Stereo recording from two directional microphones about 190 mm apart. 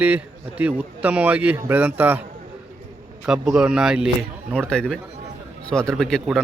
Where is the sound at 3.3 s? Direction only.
5° right (ahead or behind).